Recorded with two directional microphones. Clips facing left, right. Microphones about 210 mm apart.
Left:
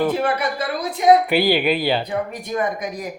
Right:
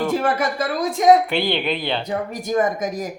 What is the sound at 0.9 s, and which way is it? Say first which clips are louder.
Speech: right 1 dB; 45° right (ahead or behind).